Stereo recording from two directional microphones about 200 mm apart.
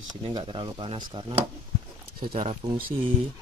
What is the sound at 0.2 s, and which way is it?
Speech, 25° right (ahead or behind).